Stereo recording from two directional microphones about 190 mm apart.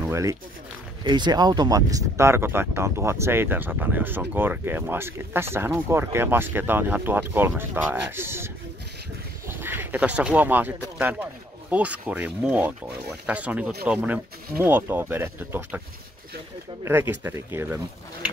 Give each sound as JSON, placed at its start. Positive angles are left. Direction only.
{"t": 0.1, "sound": "speech", "side_deg": -15}
{"t": 9.5, "sound": "speech", "side_deg": -10}
{"t": 16.8, "sound": "speech", "side_deg": -10}